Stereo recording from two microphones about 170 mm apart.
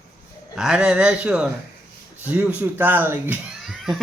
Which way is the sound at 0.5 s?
5° right (ahead or behind).